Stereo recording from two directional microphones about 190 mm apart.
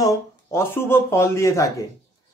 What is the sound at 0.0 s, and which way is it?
Speech, 15° left (ahead or behind).